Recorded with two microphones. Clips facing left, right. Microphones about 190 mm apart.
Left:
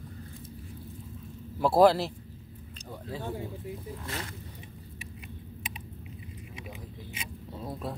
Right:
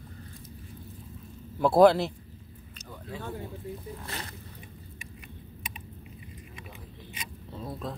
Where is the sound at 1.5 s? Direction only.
Centre (ahead or behind).